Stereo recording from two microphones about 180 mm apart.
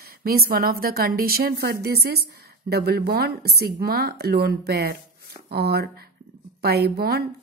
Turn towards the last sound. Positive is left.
turn(degrees=-60)  # may be behind; listen again after turning